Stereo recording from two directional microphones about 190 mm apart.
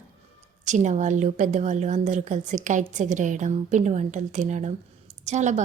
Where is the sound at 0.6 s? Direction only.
40° right (ahead or behind).